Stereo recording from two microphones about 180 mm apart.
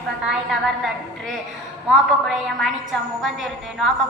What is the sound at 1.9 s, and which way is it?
A woman's voice, centre (ahead or behind).